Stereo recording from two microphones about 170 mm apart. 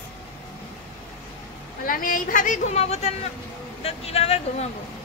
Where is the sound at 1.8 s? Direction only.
55° left (ahead or behind); by 4.4 s 35° left (ahead or behind).